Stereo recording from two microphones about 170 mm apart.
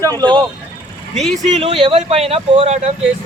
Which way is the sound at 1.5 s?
35° right (ahead or behind).